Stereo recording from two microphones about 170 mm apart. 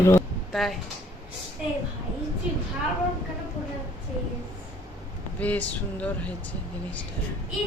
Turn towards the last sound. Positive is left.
turn(degrees=10)  # may be behind; listen again after turning